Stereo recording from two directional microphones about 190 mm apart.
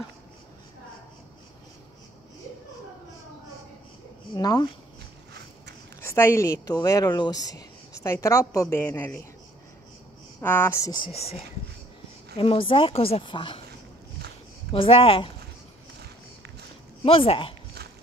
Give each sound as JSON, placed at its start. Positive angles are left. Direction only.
{"t": 4.4, "sound": "speech", "side_deg": 20}
{"t": 5.9, "sound": "speech", "side_deg": 10}
{"t": 10.4, "sound": "speech", "side_deg": 10}
{"t": 11.1, "sound": "speech", "side_deg": 30}
{"t": 12.4, "sound": "a woman's voice", "side_deg": 30}
{"t": 14.7, "sound": "a woman's voice", "side_deg": 30}
{"t": 17.0, "sound": "a woman's voice", "side_deg": 30}